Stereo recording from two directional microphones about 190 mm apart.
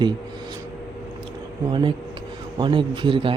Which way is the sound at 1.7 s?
25° right (ahead or behind).